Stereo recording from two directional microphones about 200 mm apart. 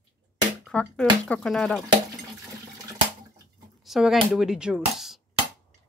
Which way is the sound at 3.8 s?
Centre (ahead or behind).